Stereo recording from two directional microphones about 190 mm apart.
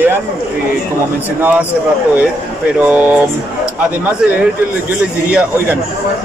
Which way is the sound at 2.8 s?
10° right (ahead or behind).